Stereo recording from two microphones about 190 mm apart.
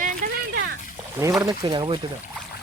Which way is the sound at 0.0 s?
45° right (ahead or behind).